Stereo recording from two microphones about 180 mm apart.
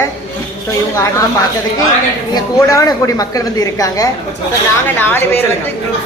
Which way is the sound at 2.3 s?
20° left (ahead or behind).